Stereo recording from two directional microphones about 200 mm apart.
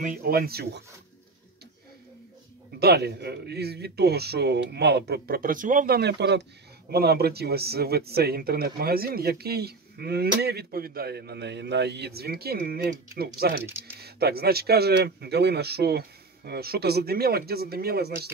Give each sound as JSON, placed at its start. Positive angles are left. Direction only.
{"t": 0.0, "sound": "speech", "side_deg": -45}
{"t": 2.8, "sound": "speech", "side_deg": -55}